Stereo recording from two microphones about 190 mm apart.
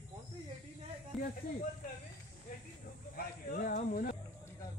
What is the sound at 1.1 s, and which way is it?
Snake, centre (ahead or behind).